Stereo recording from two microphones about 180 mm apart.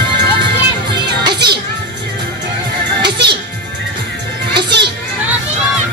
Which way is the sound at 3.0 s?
70° right (ahead or behind).